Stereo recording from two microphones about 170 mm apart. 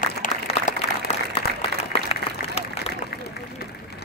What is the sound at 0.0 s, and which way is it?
Applause, 50° left (ahead or behind).